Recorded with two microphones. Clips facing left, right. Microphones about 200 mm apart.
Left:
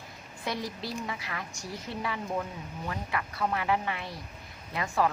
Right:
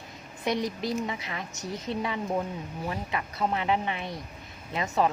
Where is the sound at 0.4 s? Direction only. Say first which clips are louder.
Right 6 dB; 20° right (ahead or behind).